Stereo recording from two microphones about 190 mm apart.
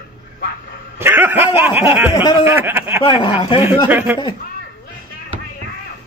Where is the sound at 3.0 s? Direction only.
25° left (ahead or behind).